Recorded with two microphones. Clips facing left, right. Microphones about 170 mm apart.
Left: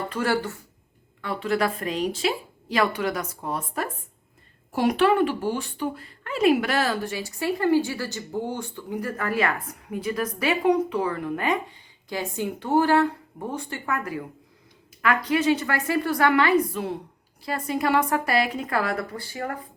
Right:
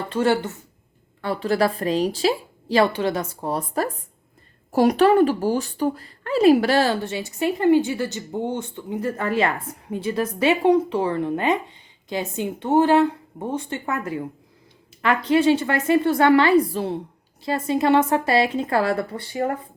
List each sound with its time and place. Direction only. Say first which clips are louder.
0.1 s speech: right 7 dB; 25° right (ahead or behind)
1.2 s a woman's voice: right 4 dB; 35° right (ahead or behind)